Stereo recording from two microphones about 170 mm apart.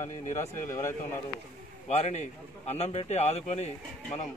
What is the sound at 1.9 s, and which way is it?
Speech, 40° left (ahead or behind).